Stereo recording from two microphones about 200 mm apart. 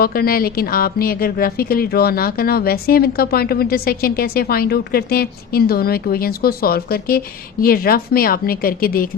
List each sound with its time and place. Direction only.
0.0 s a woman's voice: 50° left (ahead or behind)